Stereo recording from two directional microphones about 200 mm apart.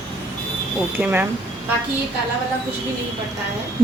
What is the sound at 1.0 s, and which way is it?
Speech, 10° right (ahead or behind).